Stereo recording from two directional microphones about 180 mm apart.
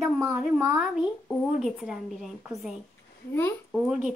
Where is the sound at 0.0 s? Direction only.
10° right (ahead or behind).